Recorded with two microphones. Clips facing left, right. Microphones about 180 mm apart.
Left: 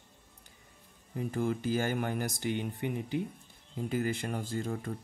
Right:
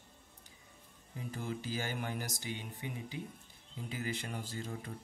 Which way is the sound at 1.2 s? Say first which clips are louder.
Left 9 dB; 55° left (ahead or behind).